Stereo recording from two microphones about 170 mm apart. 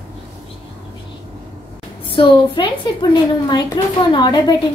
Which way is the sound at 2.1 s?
30° left (ahead or behind).